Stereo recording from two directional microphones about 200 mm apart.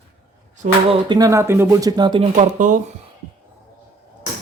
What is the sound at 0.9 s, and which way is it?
Speech, 20° right (ahead or behind).